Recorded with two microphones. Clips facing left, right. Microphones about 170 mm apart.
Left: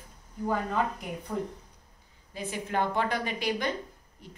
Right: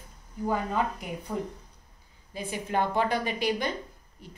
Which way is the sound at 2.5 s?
15° right (ahead or behind).